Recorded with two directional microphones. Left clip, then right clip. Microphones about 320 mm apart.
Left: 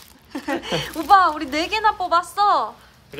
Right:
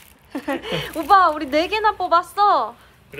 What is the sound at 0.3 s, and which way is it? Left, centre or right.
Speech, centre.